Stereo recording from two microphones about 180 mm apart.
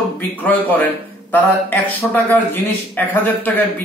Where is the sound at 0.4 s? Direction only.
10° left (ahead or behind).